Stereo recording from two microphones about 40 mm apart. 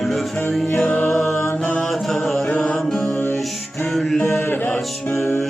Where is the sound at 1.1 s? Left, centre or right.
Centre.